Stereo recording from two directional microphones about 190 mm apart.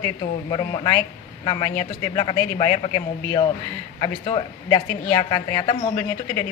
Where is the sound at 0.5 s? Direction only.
20° left (ahead or behind).